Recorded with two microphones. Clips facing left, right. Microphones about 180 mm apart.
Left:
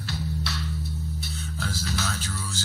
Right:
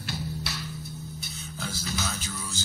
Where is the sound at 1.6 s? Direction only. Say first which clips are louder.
Left 2 dB; 5° left (ahead or behind).